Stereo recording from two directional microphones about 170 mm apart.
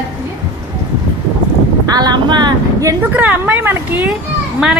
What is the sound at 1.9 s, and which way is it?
Speech, 25° right (ahead or behind).